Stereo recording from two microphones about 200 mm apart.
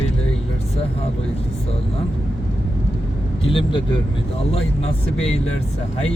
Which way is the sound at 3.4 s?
25° left (ahead or behind).